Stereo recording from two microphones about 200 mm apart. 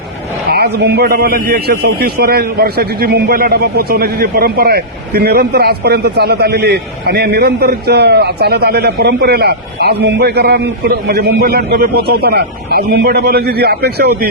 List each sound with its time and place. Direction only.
0.5 s a man's voice: 50° right (ahead or behind)